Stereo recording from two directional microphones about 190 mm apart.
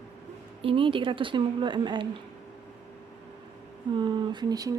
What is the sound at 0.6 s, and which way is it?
Speech, 30° right (ahead or behind).